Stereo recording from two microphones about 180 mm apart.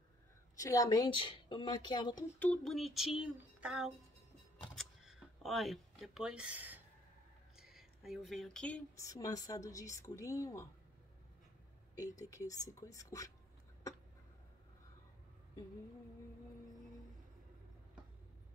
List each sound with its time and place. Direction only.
0.6 s speech: 20° left (ahead or behind)
2.3 s a sound: 5° left (ahead or behind); by 6.8 s 10° right (ahead or behind)
7.5 s speech: centre (ahead or behind); by 10.7 s 15° left (ahead or behind)
12.0 s speech: 20° left (ahead or behind)